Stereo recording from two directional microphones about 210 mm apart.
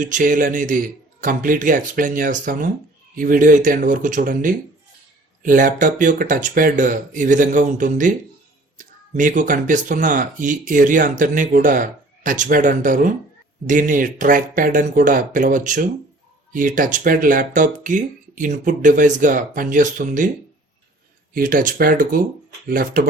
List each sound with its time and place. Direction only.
0.0 s speech: 40° right (ahead or behind)
21.3 s speech: 40° right (ahead or behind)